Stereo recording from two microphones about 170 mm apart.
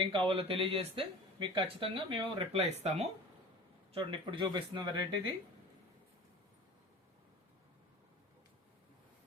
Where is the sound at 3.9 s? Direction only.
30° right (ahead or behind).